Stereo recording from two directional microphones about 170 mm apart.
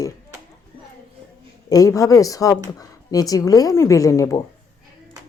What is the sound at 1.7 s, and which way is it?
A woman's voice, 20° left (ahead or behind).